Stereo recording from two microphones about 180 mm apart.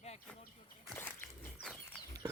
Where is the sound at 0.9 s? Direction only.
10° left (ahead or behind).